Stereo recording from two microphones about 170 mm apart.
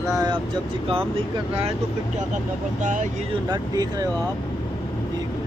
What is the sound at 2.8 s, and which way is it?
Speech, 50° right (ahead or behind).